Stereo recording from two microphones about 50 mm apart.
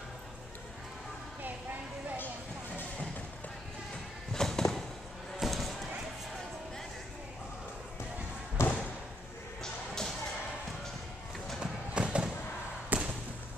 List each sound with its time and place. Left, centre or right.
1.4 s music: right
4.3 s music: centre
5.4 s a sound: centre
8.6 s thump: left
9.6 s music: centre
11.6 s a sound: right
12.9 s basketball bounce: right